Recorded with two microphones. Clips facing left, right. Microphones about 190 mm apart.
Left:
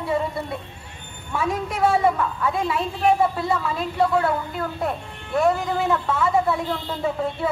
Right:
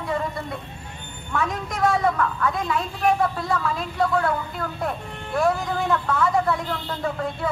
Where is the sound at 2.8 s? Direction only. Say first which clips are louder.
Left 2 dB; 25° left (ahead or behind).